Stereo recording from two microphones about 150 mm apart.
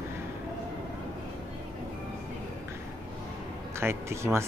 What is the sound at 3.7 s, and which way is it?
Speech, 15° right (ahead or behind).